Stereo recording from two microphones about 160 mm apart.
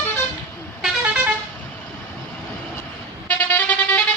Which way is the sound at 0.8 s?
5° right (ahead or behind).